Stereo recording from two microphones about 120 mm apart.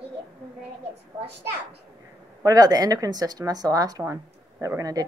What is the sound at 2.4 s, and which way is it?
Speech, 30° right (ahead or behind).